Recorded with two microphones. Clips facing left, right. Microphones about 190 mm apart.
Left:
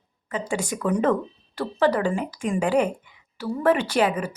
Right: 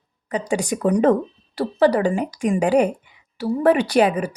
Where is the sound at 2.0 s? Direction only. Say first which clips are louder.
Right 4 dB; 15° right (ahead or behind).